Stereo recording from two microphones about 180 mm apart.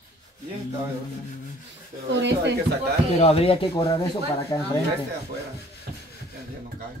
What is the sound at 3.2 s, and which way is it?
Speech, 30° left (ahead or behind).